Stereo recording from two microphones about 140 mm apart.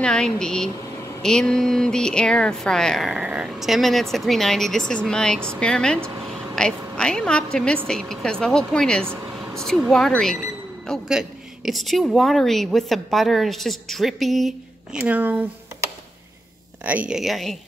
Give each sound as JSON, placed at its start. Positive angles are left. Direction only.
{"t": 0.0, "sound": "a woman's voice", "side_deg": 5}
{"t": 5.9, "sound": "speech", "side_deg": -20}
{"t": 6.2, "sound": "a sound", "side_deg": 5}
{"t": 7.5, "sound": "a woman's voice", "side_deg": 5}
{"t": 16.8, "sound": "a woman's voice", "side_deg": -10}